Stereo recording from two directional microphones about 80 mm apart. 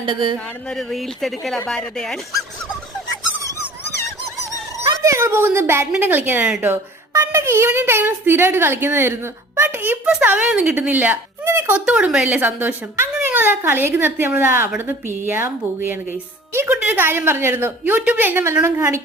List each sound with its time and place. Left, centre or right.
0.0 s speech: right
0.3 s speech: centre
4.9 s a woman's voice: right
7.1 s a woman's voice: right
10.2 s a woman's voice: centre
11.4 s a sound: right
11.9 s speech: centre
12.5 s a woman's voice: right